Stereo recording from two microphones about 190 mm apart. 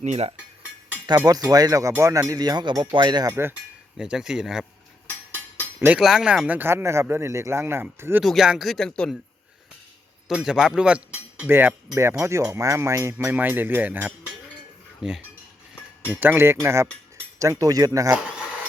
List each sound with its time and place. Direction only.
0.0 s cutlery: 35° right (ahead or behind)
1.0 s speech: 20° right (ahead or behind)
3.9 s speech: 5° right (ahead or behind)
5.0 s a sound: 10° left (ahead or behind)
5.8 s speech: 5° right (ahead or behind)
8.2 s speech: centre (ahead or behind)
10.2 s speech: 5° right (ahead or behind)
16.2 s speech: 10° right (ahead or behind)
18.2 s a sound: 5° right (ahead or behind)